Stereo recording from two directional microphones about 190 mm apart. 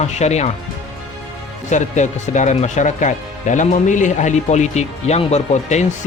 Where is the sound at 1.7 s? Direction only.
40° left (ahead or behind).